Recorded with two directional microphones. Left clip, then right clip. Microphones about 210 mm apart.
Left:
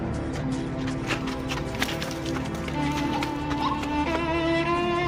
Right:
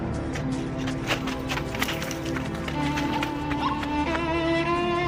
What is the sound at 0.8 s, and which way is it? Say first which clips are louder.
Music: right 3 dB; 20° right (ahead or behind).